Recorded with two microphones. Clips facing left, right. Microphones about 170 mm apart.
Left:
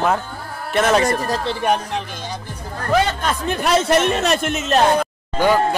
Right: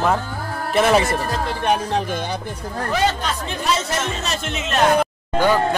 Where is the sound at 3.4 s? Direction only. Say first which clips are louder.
Left 7 dB; 60° left (ahead or behind); by 4.8 s 40° left (ahead or behind).